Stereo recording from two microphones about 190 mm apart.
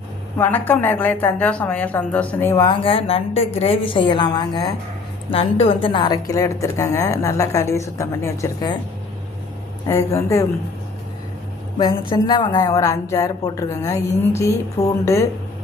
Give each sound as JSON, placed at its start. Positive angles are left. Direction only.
{"t": 0.3, "sound": "a woman's voice", "side_deg": 10}
{"t": 2.6, "sound": "a woman's voice", "side_deg": 25}
{"t": 9.8, "sound": "a woman's voice", "side_deg": 15}
{"t": 11.8, "sound": "a woman's voice", "side_deg": 25}